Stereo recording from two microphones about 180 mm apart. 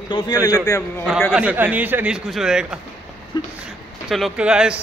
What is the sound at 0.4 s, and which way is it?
Speech, 10° right (ahead or behind).